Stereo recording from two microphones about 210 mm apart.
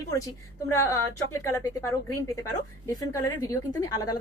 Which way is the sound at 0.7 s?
15° left (ahead or behind).